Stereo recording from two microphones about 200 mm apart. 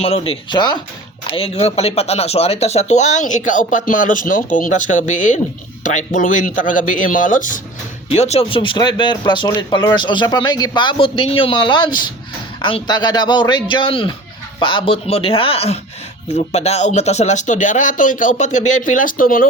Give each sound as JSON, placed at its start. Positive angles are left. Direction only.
{"t": 0.0, "sound": "speech", "side_deg": 30}